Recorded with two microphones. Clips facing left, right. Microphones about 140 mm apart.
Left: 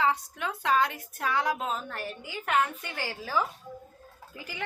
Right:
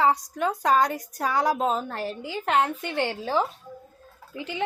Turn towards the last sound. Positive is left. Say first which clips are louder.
# right 8 dB
turn(degrees=-25)  # may be behind; listen again after turning